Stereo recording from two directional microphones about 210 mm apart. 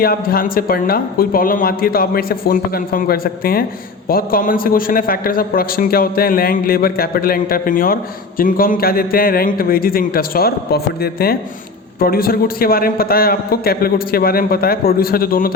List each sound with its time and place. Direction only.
0.0 s a man's voice: 45° left (ahead or behind)